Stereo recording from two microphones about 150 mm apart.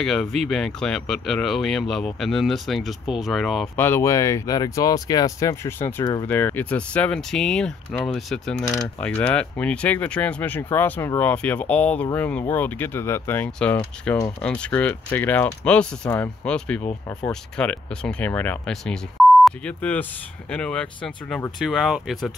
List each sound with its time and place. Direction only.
0.0 s speech: 5° left (ahead or behind)
3.7 s speech: 15° left (ahead or behind)
8.6 s speech: 15° left (ahead or behind)